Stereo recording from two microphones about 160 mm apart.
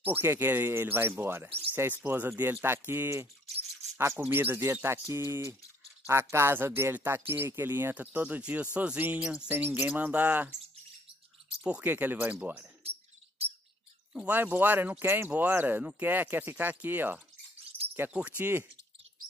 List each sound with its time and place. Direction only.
0.0 s speech: 15° right (ahead or behind)
11.6 s speech: 10° right (ahead or behind)
14.1 s speech: 10° right (ahead or behind)